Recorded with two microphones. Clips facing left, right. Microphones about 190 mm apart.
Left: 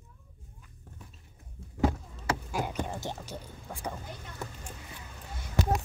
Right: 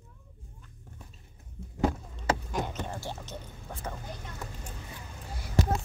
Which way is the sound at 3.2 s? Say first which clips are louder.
Left 1 dB; 10° left (ahead or behind).